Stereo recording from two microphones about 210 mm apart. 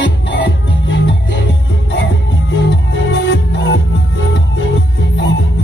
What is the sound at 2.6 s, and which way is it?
Music, 60° left (ahead or behind).